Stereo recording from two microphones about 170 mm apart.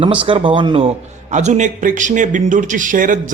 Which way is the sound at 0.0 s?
30° right (ahead or behind).